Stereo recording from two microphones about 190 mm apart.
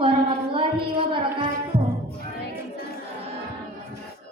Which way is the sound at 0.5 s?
25° right (ahead or behind).